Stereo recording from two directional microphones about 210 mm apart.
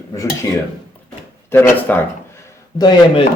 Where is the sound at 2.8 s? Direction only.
20° left (ahead or behind).